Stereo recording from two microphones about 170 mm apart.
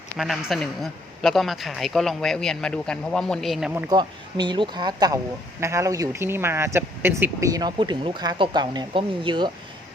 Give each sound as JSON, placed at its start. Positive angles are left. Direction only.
{"t": 0.2, "sound": "a man's voice", "side_deg": 0}
{"t": 3.8, "sound": "speech", "side_deg": -25}